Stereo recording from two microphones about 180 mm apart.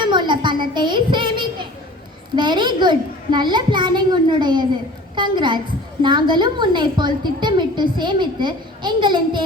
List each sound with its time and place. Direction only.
0.0 s a sound: 25° right (ahead or behind)
0.7 s child singing: 25° right (ahead or behind)
2.3 s a woman's voice: 25° right (ahead or behind)